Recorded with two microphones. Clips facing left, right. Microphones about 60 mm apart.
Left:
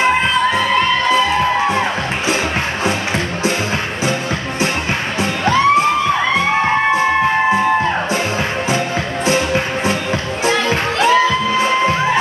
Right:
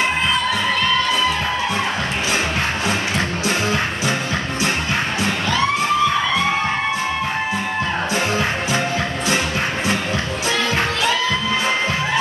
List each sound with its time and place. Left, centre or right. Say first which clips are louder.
10.4 s music: left 5 dB; left